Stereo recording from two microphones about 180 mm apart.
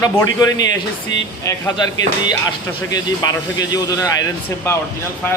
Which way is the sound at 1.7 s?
25° left (ahead or behind).